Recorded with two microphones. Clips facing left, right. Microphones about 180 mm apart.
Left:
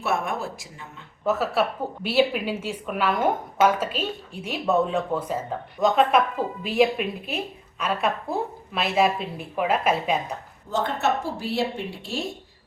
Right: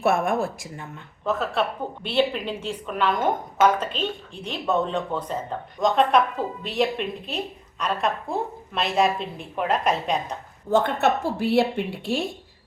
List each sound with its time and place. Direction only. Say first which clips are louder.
0.0 s speech: right 5 dB; 50° right (ahead or behind)
1.2 s a woman's voice: left 2 dB; 5° left (ahead or behind)
10.7 s speech: right 4 dB; 60° right (ahead or behind)